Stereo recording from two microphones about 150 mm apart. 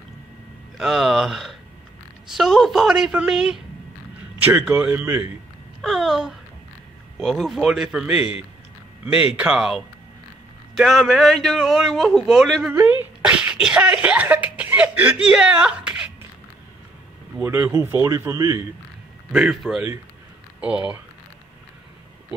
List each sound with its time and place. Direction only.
0.7 s a man's voice: centre (ahead or behind)
5.8 s speech: centre (ahead or behind)
13.2 s sneeze: 5° right (ahead or behind)
17.4 s speech: 15° right (ahead or behind)
19.3 s a man's voice: 5° right (ahead or behind)